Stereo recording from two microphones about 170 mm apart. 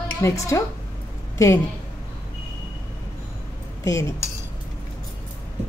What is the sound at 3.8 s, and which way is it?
Speech, 20° left (ahead or behind).